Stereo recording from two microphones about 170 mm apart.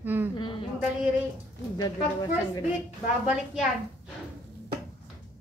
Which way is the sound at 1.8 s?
25° left (ahead or behind).